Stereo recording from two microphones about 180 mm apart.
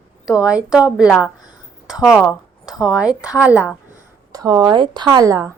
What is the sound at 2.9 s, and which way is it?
Speech, 5° right (ahead or behind).